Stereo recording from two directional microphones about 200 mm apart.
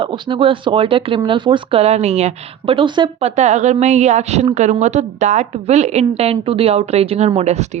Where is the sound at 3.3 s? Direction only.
35° right (ahead or behind).